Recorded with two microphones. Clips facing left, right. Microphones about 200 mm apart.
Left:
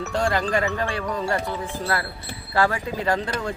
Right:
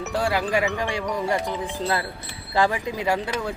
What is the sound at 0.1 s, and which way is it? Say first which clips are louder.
Speech: even; 5° right (ahead or behind).